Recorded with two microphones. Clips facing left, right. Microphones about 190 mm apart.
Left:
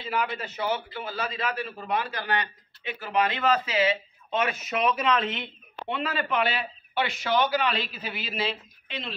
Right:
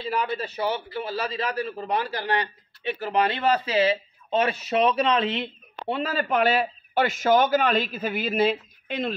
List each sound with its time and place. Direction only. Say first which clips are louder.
0.1 s a man's voice: right 1 dB; 35° right (ahead or behind)